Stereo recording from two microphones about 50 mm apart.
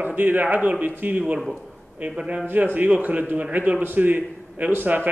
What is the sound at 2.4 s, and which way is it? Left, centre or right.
A man's voice, right.